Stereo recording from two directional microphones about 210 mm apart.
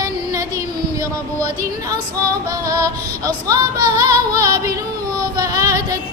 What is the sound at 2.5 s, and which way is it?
Music, 15° right (ahead or behind).